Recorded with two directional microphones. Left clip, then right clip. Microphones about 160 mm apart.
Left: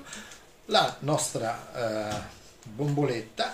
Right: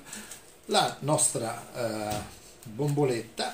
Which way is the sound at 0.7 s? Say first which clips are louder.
Left 1 dB; 15° left (ahead or behind).